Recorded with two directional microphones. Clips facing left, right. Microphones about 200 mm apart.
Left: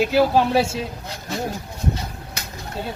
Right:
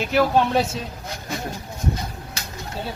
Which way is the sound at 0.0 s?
10° left (ahead or behind).